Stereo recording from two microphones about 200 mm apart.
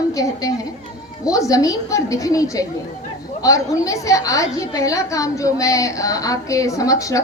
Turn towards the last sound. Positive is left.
turn(degrees=15)  # may be behind; listen again after turning